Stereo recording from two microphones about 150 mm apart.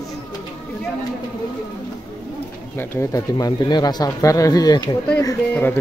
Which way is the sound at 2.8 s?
15° left (ahead or behind).